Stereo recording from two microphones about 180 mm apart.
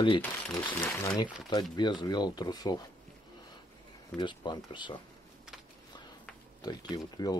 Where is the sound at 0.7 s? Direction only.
10° left (ahead or behind).